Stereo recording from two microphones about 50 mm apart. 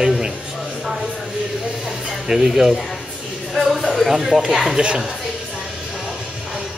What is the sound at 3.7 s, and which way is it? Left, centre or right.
Speech, centre.